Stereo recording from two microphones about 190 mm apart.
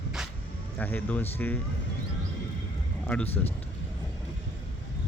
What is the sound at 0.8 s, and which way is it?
Speech, 10° left (ahead or behind).